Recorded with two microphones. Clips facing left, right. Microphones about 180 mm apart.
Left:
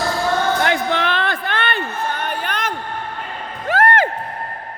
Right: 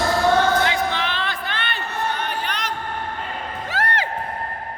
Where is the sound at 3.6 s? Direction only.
55° left (ahead or behind).